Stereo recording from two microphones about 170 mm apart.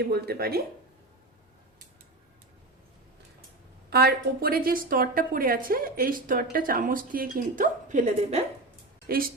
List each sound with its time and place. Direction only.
0.0 s a woman's voice: 65° right (ahead or behind)
3.8 s a woman's voice: 65° right (ahead or behind); by 8.4 s 40° right (ahead or behind)
9.0 s speech: 60° right (ahead or behind)